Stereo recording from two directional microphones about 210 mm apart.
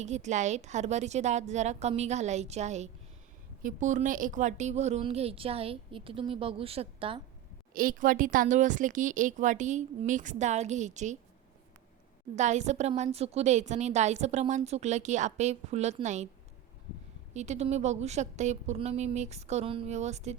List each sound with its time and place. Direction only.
0.0 s a woman's voice: 35° right (ahead or behind)
7.7 s a woman's voice: 40° right (ahead or behind)
12.4 s a woman's voice: 35° right (ahead or behind)
17.3 s a woman's voice: 35° right (ahead or behind)